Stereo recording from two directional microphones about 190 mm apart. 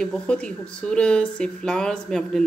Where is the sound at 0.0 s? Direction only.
5° left (ahead or behind).